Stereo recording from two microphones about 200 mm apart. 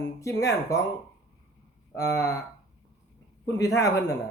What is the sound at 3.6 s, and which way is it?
Speech, 15° left (ahead or behind).